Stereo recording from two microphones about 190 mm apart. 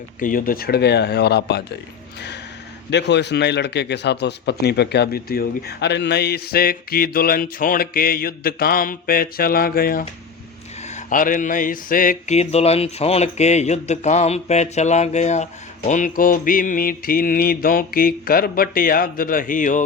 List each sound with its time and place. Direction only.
0.2 s speech: 45° left (ahead or behind)
2.9 s a man's voice: 65° left (ahead or behind)
10.8 s mantra: 40° left (ahead or behind)
15.9 s a man's voice: 40° left (ahead or behind)